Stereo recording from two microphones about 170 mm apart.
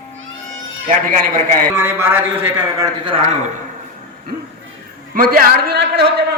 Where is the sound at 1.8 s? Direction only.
10° right (ahead or behind).